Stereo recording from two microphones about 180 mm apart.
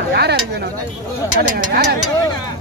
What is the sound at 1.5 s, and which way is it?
Speech, 55° right (ahead or behind).